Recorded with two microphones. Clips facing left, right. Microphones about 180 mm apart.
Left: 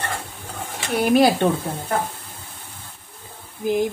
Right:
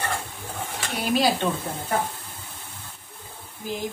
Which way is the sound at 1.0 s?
55° left (ahead or behind).